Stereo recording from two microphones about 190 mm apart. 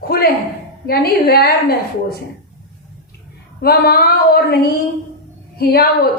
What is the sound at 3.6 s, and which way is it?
A woman's voice, 55° left (ahead or behind).